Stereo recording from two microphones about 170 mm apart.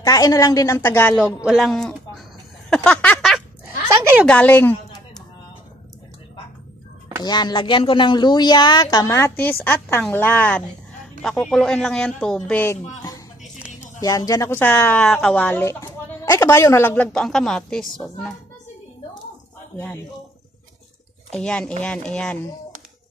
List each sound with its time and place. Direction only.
0.0 s speech: 20° left (ahead or behind)
1.1 s speech: 5° right (ahead or behind)
2.7 s a sound: 5° left (ahead or behind)
3.6 s a sound: 15° right (ahead or behind)
4.3 s speech: 10° left (ahead or behind)
7.2 s speech: 25° left (ahead or behind); by 12.7 s 10° left (ahead or behind)
13.9 s speech: 20° left (ahead or behind); by 18.4 s centre (ahead or behind)
21.3 s speech: 5° left (ahead or behind)